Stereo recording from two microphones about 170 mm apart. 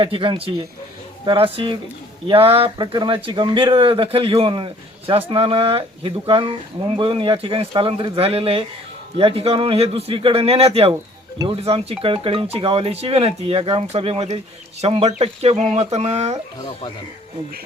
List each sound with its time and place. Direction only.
0.0 s a man's voice: 30° right (ahead or behind)
16.6 s speech: 30° left (ahead or behind)